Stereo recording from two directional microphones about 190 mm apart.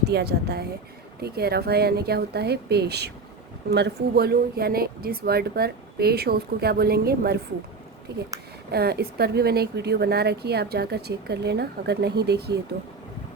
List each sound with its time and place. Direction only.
0.0 s speech: 60° right (ahead or behind)